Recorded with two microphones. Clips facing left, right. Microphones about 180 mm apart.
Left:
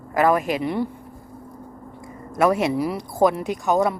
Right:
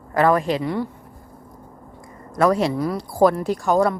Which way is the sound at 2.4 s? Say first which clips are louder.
Right 1 dB; 25° left (ahead or behind).